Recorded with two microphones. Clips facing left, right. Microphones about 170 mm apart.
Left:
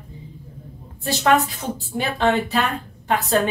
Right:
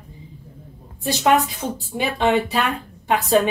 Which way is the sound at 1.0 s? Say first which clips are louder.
Even; 15° right (ahead or behind).